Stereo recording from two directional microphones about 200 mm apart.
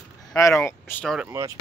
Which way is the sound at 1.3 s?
15° right (ahead or behind).